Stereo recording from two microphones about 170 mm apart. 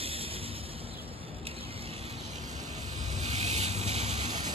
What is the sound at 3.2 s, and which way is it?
Boat, 40° right (ahead or behind).